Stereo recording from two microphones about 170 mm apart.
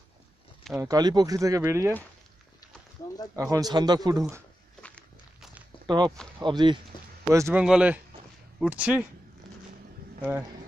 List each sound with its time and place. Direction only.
0.7 s speech: 20° right (ahead or behind)
3.3 s speech: 20° right (ahead or behind)
4.8 s walk: 5° left (ahead or behind)
5.9 s speech: 25° right (ahead or behind)
7.3 s speech: 15° right (ahead or behind)
7.6 s speech: 5° right (ahead or behind)